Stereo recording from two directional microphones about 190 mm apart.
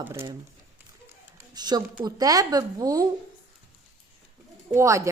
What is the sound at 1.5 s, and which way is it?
Speech, 20° right (ahead or behind).